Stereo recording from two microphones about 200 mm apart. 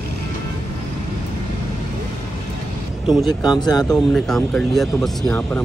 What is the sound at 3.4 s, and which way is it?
Speech, 20° left (ahead or behind).